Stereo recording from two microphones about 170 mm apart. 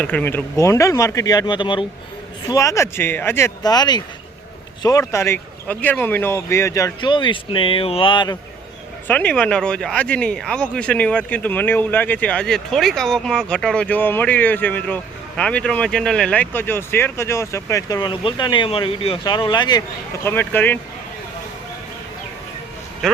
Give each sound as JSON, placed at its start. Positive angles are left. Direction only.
{"t": 0.0, "sound": "speech", "side_deg": 10}
{"t": 9.0, "sound": "speech", "side_deg": 10}
{"t": 20.2, "sound": "speech", "side_deg": 10}